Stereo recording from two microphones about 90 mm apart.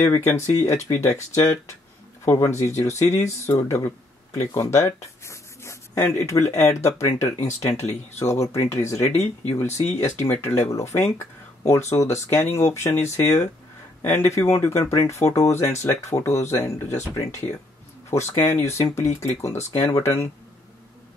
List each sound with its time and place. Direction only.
0.0 s speech: 30° left (ahead or behind)
9.6 s speech: 25° left (ahead or behind)